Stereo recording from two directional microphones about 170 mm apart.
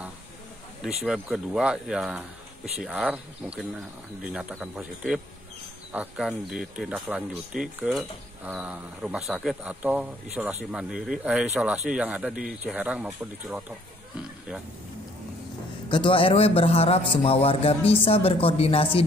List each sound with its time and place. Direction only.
0.8 s speech: 5° right (ahead or behind)
15.9 s a man's voice: 30° left (ahead or behind)